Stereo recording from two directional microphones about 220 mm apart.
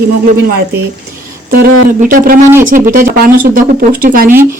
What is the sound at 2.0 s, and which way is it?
Speech, 40° right (ahead or behind).